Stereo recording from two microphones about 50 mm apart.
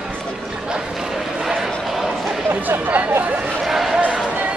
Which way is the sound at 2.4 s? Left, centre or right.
Right.